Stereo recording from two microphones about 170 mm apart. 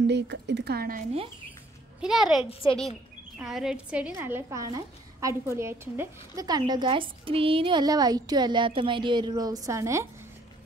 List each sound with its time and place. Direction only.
0.0 s speech: 90° right; by 1.0 s 60° right (ahead or behind)
2.0 s a child's voice: 5° right (ahead or behind)